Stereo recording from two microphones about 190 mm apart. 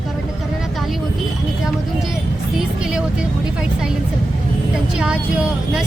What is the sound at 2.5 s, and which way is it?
Music, 5° right (ahead or behind).